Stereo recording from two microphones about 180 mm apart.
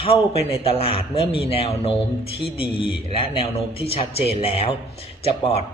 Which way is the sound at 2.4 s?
Centre (ahead or behind).